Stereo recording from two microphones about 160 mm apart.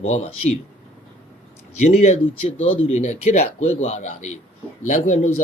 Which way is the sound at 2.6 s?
45° left (ahead or behind).